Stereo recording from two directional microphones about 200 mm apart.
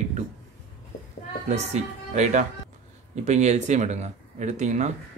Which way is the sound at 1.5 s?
35° right (ahead or behind).